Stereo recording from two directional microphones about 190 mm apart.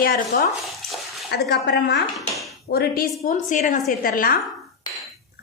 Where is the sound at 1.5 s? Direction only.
60° left (ahead or behind).